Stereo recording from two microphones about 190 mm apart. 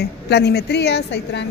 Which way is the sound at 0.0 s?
60° left (ahead or behind).